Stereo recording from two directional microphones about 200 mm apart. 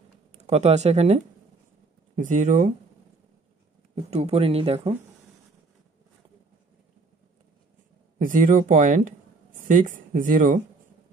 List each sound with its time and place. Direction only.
0.5 s speech: 35° right (ahead or behind)
3.9 s speech: 35° right (ahead or behind)
8.2 s speech: 45° right (ahead or behind)